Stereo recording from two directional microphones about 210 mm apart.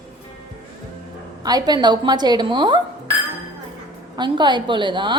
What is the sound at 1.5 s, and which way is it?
Speech, 20° right (ahead or behind).